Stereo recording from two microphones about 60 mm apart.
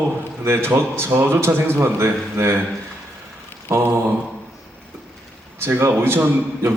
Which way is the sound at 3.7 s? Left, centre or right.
Right.